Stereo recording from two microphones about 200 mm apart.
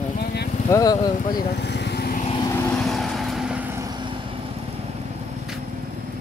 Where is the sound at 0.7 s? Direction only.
15° left (ahead or behind).